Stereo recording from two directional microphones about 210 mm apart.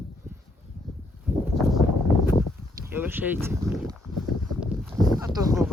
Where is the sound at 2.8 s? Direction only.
10° right (ahead or behind).